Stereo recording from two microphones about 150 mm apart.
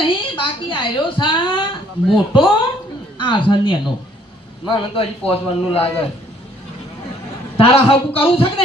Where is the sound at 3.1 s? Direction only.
30° left (ahead or behind).